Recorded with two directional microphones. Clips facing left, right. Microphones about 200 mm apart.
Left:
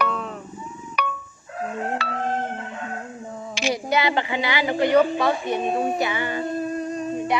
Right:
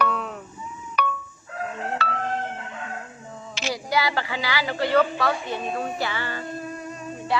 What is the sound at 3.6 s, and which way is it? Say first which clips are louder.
A woman's voice: left 3 dB; 15° left (ahead or behind).